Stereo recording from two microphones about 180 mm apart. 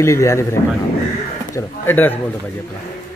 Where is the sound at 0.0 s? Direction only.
15° left (ahead or behind).